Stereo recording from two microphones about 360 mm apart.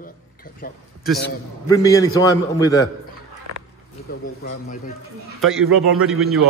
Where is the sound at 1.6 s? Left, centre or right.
Centre.